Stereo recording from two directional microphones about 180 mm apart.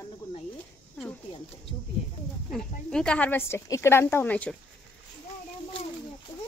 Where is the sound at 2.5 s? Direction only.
5° left (ahead or behind).